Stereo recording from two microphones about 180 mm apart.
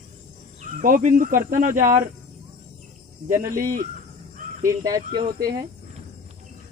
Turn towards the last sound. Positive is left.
turn(degrees=-50)  # may be behind; listen again after turning